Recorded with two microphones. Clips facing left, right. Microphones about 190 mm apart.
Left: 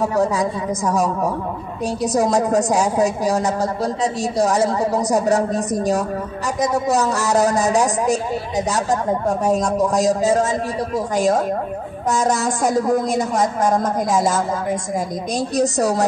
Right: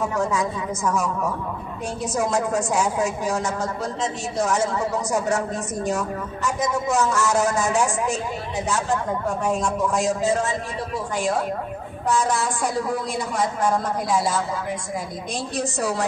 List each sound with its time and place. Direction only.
0.0 s a woman's voice: 35° left (ahead or behind)